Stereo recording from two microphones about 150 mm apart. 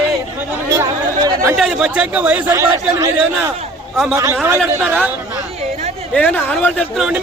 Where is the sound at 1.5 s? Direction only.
5° right (ahead or behind).